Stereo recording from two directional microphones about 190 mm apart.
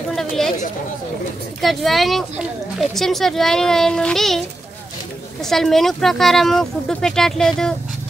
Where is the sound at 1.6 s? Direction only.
Centre (ahead or behind).